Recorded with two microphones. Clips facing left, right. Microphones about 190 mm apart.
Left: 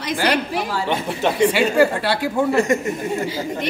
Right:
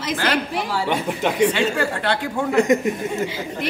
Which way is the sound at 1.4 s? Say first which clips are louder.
Left 7 dB; 10° left (ahead or behind).